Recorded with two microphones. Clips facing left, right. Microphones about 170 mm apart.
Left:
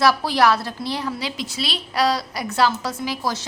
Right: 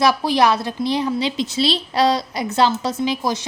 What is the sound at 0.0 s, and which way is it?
A woman's voice, 20° right (ahead or behind).